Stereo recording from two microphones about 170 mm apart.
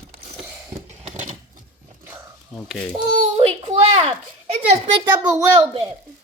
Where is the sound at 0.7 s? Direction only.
40° right (ahead or behind).